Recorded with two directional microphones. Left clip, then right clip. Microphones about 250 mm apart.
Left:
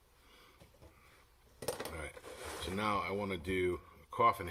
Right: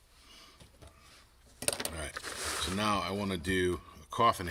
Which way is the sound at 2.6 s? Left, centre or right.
Right.